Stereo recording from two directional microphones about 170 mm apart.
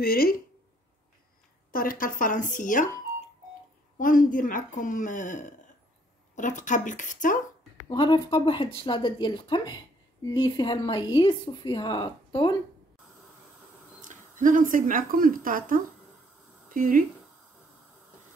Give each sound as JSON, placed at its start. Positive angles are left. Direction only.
{"t": 0.0, "sound": "speech", "side_deg": 60}
{"t": 1.7, "sound": "a woman's voice", "side_deg": 55}
{"t": 4.0, "sound": "a woman's voice", "side_deg": 50}
{"t": 7.9, "sound": "speech", "side_deg": 25}
{"t": 14.0, "sound": "speech", "side_deg": -50}